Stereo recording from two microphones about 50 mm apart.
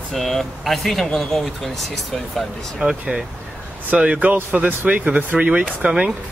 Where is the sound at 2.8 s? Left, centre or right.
Centre.